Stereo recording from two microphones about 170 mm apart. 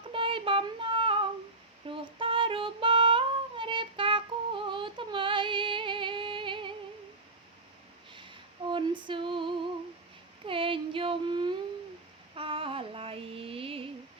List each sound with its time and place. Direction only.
0.1 s child singing: 30° right (ahead or behind)
1.9 s female singing: 30° right (ahead or behind)
8.1 s female singing: 30° right (ahead or behind)
10.4 s a sound: 30° right (ahead or behind)
12.3 s female singing: 30° right (ahead or behind)